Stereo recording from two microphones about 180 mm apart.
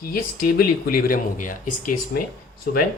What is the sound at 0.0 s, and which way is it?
Speech, 55° left (ahead or behind).